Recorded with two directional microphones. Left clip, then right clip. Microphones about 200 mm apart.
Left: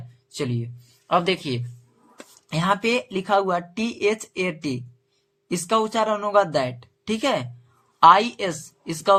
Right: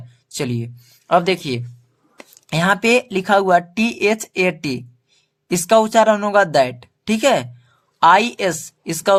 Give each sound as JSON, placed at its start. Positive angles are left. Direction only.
{"t": 0.3, "sound": "speech", "side_deg": -35}